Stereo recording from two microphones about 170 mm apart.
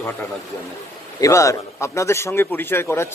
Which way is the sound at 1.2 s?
20° left (ahead or behind).